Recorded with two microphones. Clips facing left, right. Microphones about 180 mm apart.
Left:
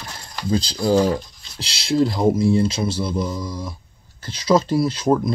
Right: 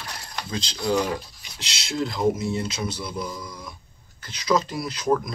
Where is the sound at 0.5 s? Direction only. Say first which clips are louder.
Left 7 dB; 35° left (ahead or behind).